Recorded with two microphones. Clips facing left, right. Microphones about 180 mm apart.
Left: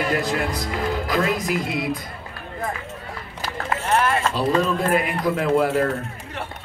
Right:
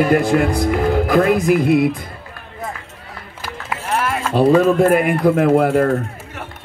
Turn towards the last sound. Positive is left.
turn(degrees=-55)  # may be behind; listen again after turning